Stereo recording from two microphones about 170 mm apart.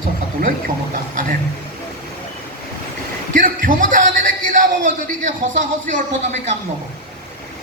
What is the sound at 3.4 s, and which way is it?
Music, 50° right (ahead or behind).